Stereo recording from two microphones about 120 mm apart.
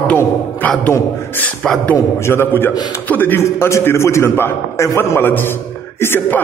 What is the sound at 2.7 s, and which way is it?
Speech, 35° left (ahead or behind).